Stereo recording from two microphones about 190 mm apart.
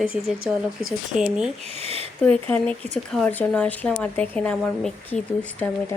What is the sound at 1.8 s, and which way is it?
Speech, 30° right (ahead or behind).